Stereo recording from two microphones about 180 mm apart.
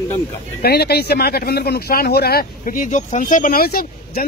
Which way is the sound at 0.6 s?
60° left (ahead or behind).